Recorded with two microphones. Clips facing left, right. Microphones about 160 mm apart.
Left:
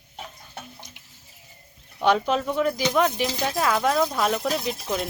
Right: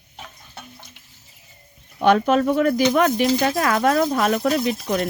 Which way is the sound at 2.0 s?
55° right (ahead or behind).